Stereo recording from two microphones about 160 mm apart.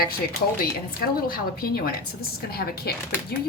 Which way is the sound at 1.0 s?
65° left (ahead or behind).